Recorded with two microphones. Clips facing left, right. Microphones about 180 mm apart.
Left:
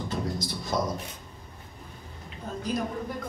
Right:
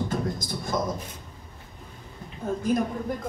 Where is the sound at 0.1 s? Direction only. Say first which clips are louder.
Right 2 dB; 50° right (ahead or behind).